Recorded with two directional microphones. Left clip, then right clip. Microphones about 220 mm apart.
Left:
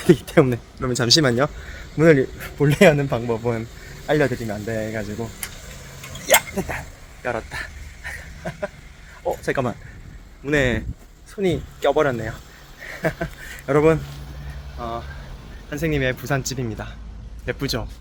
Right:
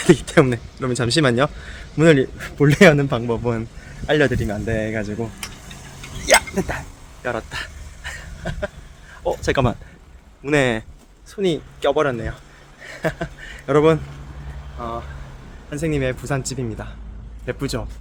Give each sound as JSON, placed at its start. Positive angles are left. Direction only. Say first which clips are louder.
{"t": 0.0, "sound": "speech", "louder": "right 1 dB", "side_deg": 0}
{"t": 1.2, "sound": "a man's voice", "louder": "right 2 dB", "side_deg": -15}
{"t": 6.6, "sound": "a man's voice", "louder": "right 3 dB", "side_deg": -15}
{"t": 9.2, "sound": "speech", "louder": "right 3 dB", "side_deg": -25}
{"t": 10.4, "sound": "a man's voice", "louder": "right 2 dB", "side_deg": -15}
{"t": 11.8, "sound": "speech", "louder": "even", "side_deg": 5}
{"t": 13.0, "sound": "a sound", "louder": "even", "side_deg": -10}
{"t": 13.7, "sound": "a man's voice", "louder": "right 1 dB", "side_deg": -10}